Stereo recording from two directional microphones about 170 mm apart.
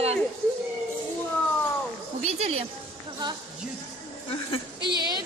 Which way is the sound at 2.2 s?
35° right (ahead or behind).